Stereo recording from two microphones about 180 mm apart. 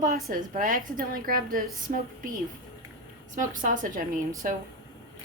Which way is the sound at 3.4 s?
45° right (ahead or behind).